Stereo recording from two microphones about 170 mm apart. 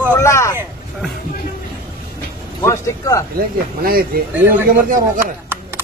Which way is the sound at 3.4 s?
60° right (ahead or behind).